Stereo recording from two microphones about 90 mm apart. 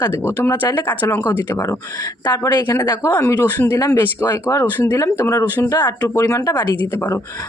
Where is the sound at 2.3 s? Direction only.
45° left (ahead or behind).